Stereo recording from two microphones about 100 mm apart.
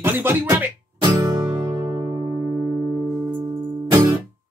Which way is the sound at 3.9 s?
40° right (ahead or behind).